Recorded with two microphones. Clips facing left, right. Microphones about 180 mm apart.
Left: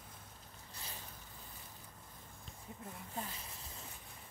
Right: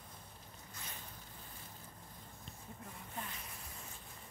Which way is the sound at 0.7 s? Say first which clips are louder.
Left 1 dB; 30° left (ahead or behind).